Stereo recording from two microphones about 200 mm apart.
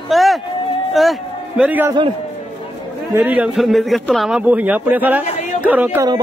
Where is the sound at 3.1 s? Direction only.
10° right (ahead or behind).